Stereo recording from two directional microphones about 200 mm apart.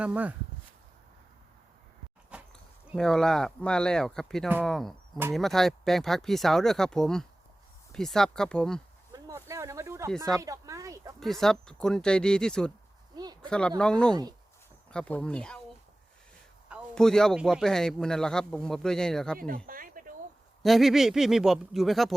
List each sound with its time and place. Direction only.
0.0 s speech: 5° right (ahead or behind)
2.3 s a sound: 5° right (ahead or behind)
2.9 s a man's voice: centre (ahead or behind)
9.1 s speech: 15° right (ahead or behind)
10.4 s a sound: 15° right (ahead or behind)
11.2 s a man's voice: centre (ahead or behind)
13.1 s a sound: 20° right (ahead or behind)
13.5 s a man's voice: 5° left (ahead or behind)
16.6 s a man's voice: centre (ahead or behind)
19.4 s speech: 45° right (ahead or behind)
20.6 s a man's voice: centre (ahead or behind)